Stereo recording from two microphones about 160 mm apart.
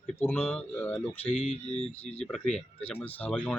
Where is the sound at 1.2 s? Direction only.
40° left (ahead or behind).